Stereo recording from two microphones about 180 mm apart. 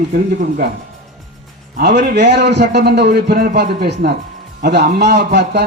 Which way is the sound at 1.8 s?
65° right (ahead or behind).